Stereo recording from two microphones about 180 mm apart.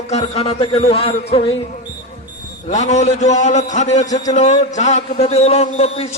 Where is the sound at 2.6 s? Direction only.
40° left (ahead or behind).